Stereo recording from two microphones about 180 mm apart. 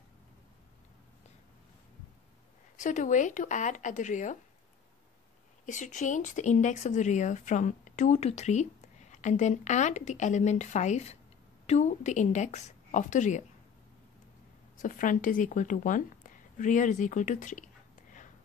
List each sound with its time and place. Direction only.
2.8 s speech: 45° left (ahead or behind)
5.7 s speech: 45° left (ahead or behind)
14.8 s speech: 45° left (ahead or behind)